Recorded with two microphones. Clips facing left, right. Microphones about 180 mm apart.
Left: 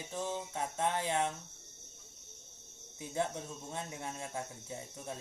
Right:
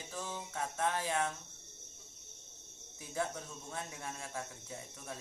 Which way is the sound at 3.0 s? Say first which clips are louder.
Left 3 dB; 20° left (ahead or behind).